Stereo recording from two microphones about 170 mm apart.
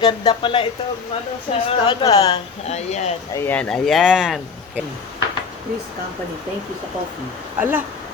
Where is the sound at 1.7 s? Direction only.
25° left (ahead or behind).